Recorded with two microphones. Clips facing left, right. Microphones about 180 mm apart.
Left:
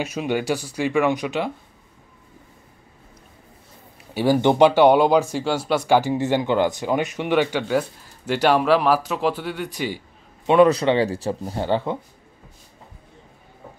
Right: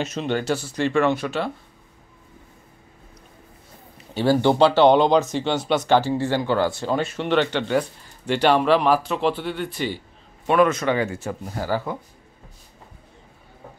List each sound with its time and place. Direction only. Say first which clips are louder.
0.0 s speech: left 1 dB; 10° left (ahead or behind)
4.1 s speech: left 1 dB; 15° left (ahead or behind)
10.4 s a man's voice: left 4 dB; 20° left (ahead or behind)